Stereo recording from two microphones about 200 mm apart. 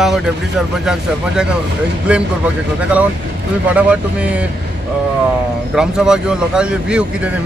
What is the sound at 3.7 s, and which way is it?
Speech, 5° right (ahead or behind).